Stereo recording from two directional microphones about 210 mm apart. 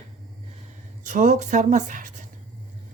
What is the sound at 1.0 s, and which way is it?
Speech, 35° right (ahead or behind).